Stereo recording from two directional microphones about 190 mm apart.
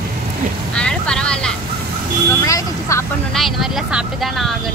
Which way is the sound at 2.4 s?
15° left (ahead or behind).